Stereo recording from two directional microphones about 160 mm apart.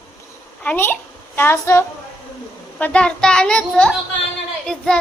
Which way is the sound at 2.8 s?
5° left (ahead or behind).